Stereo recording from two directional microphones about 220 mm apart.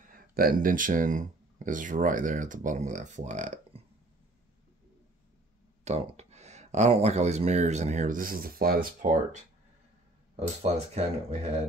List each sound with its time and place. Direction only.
0.1 s speech: 40° right (ahead or behind)
5.9 s speech: 30° right (ahead or behind)